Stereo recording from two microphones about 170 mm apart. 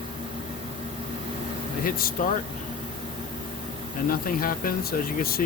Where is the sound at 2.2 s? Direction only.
55° left (ahead or behind).